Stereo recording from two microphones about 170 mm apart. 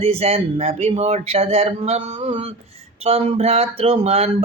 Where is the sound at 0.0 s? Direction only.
35° right (ahead or behind).